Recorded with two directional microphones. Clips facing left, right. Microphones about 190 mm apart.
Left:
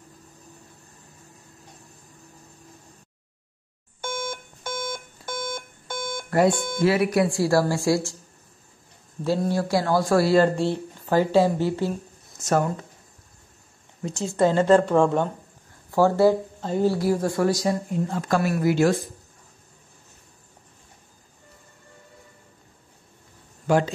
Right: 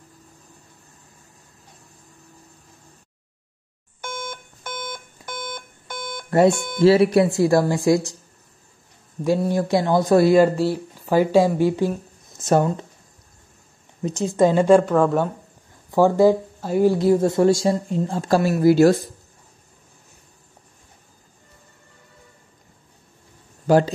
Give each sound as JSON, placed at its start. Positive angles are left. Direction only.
{"t": 4.0, "sound": "alarm clock", "side_deg": 25}
{"t": 6.5, "sound": "speech", "side_deg": 25}
{"t": 6.8, "sound": "speech", "side_deg": -30}
{"t": 9.2, "sound": "speech", "side_deg": -15}
{"t": 10.5, "sound": "a woman's voice", "side_deg": -5}
{"t": 12.4, "sound": "speech", "side_deg": -25}
{"t": 14.0, "sound": "a woman's voice", "side_deg": -20}
{"t": 15.9, "sound": "speech", "side_deg": -15}
{"t": 23.7, "sound": "a man's voice", "side_deg": -35}